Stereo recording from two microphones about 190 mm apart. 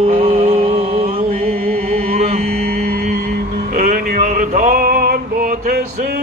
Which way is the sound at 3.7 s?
50° right (ahead or behind).